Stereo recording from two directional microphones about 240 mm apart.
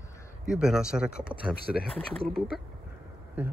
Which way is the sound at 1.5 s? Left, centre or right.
Left.